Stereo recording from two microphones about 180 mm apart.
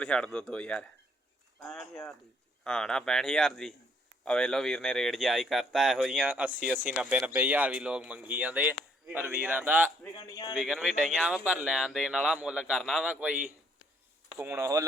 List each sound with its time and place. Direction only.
0.0 s speech: 5° left (ahead or behind)
10.0 s a man's voice: 20° left (ahead or behind)
10.5 s speech: centre (ahead or behind); by 14.8 s 15° right (ahead or behind)